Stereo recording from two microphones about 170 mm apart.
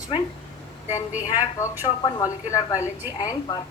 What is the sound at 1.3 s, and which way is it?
A woman's voice, 20° left (ahead or behind).